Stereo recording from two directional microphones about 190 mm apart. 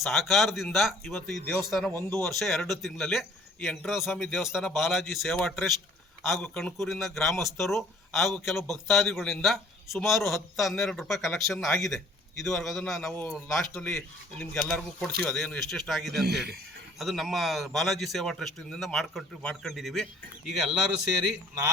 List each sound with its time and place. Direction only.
0.0 s a man's voice: centre (ahead or behind)
16.2 s speech: 60° right (ahead or behind)
17.0 s a man's voice: centre (ahead or behind)